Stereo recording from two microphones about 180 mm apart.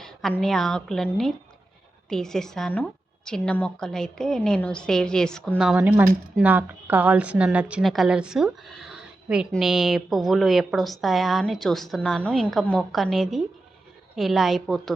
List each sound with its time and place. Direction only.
0.0 s a woman's voice: centre (ahead or behind)